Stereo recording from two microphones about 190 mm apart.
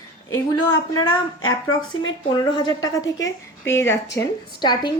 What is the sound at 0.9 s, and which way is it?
Speech, 90° left.